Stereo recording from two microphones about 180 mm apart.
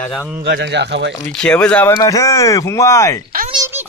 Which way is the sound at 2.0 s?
20° left (ahead or behind).